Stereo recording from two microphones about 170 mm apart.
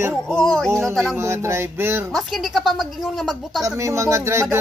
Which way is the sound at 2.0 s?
Centre (ahead or behind).